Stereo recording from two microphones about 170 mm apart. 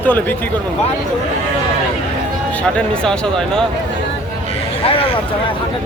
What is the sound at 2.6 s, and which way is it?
Speech, 5° left (ahead or behind).